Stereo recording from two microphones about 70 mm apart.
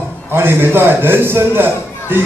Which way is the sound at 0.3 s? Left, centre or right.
Right.